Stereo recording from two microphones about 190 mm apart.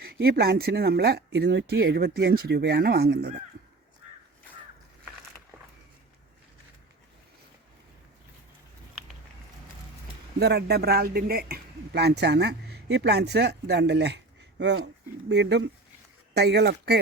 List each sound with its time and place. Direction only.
0.0 s speech: 55° right (ahead or behind)
10.4 s speech: 60° right (ahead or behind)
15.3 s speech: 65° right (ahead or behind)